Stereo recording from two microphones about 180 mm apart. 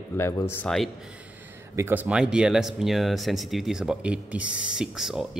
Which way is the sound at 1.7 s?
10° right (ahead or behind).